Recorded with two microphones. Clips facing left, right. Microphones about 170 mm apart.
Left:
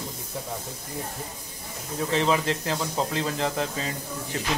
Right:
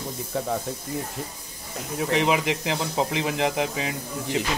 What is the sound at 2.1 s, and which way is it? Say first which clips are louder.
Speech: right 1 dB; 15° right (ahead or behind).